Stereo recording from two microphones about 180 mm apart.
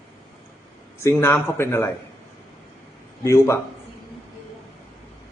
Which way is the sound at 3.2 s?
15° left (ahead or behind).